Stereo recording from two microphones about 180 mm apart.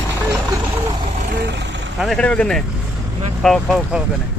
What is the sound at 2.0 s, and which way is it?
A man's voice, 5° left (ahead or behind).